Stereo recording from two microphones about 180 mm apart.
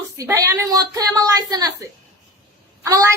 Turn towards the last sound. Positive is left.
turn(degrees=-20)  # may be behind; listen again after turning